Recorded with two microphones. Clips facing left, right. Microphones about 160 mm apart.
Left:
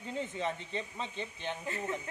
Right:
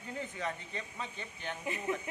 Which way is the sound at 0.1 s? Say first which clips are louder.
Left 3 dB; 20° left (ahead or behind).